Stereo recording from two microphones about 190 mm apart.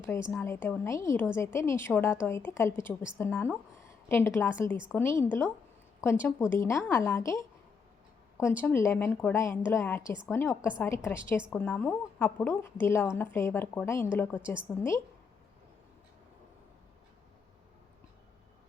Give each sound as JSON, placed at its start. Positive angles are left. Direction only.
{"t": 0.0, "sound": "a woman's voice", "side_deg": 15}
{"t": 8.6, "sound": "a woman's voice", "side_deg": 15}